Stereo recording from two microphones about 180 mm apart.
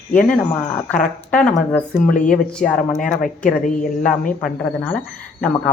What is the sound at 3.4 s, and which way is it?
Speech, 50° left (ahead or behind).